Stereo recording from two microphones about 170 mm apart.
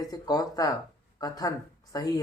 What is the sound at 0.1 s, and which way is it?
Speech, 20° left (ahead or behind).